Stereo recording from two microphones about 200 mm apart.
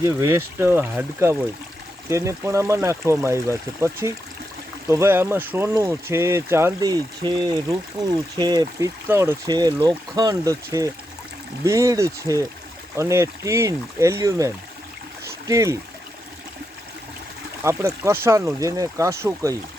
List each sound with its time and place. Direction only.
0.0 s speech: 15° right (ahead or behind)
17.6 s speech: 15° right (ahead or behind)